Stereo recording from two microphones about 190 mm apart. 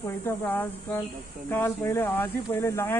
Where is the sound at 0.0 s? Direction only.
15° left (ahead or behind).